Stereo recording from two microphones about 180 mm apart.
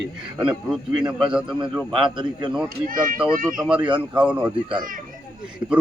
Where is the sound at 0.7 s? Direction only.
5° right (ahead or behind).